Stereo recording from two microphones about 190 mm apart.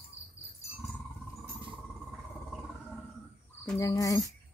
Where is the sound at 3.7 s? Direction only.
15° left (ahead or behind).